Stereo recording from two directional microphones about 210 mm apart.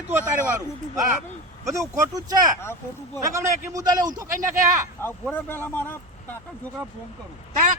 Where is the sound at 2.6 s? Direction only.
10° left (ahead or behind).